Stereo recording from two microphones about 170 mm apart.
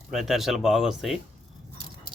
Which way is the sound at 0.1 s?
Centre (ahead or behind).